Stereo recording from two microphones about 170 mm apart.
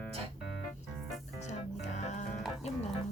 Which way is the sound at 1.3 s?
45° left (ahead or behind).